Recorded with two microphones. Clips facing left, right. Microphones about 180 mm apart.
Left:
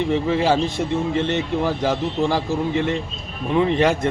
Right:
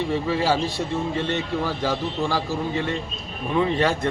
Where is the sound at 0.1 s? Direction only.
20° left (ahead or behind).